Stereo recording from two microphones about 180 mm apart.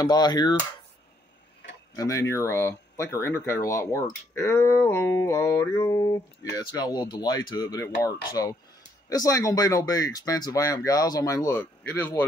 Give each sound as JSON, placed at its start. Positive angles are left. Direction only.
{"t": 0.0, "sound": "speech", "side_deg": 20}
{"t": 2.0, "sound": "speech", "side_deg": 15}